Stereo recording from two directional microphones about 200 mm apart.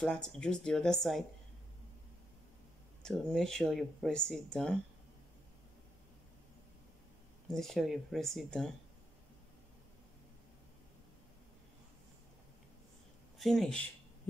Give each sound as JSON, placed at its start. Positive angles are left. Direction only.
{"t": 0.0, "sound": "speech", "side_deg": 5}
{"t": 3.0, "sound": "speech", "side_deg": 5}
{"t": 7.5, "sound": "speech", "side_deg": 0}
{"t": 13.4, "sound": "speech", "side_deg": 0}